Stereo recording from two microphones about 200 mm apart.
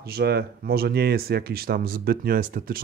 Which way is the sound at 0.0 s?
50° right (ahead or behind).